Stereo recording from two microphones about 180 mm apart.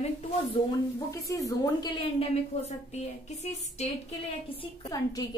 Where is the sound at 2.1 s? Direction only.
40° left (ahead or behind).